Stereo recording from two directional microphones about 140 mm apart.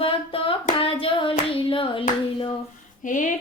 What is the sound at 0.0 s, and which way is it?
Hands, 40° left (ahead or behind).